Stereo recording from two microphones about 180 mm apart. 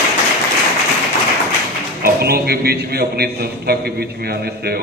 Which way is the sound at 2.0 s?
60° right (ahead or behind).